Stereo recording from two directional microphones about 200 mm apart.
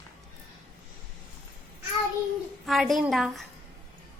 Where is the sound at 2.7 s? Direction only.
Centre (ahead or behind).